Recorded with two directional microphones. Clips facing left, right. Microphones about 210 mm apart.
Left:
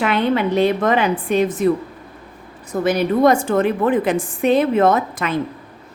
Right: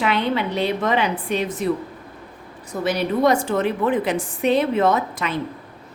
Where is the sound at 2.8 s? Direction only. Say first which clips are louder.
Left 4 dB; 50° left (ahead or behind).